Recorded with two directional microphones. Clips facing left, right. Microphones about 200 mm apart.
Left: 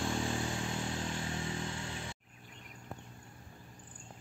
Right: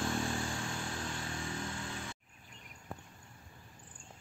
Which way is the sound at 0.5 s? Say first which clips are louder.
Left 3 dB; 20° left (ahead or behind).